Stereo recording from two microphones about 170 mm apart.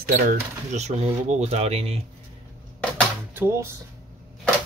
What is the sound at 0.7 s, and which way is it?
Speech, 40° right (ahead or behind).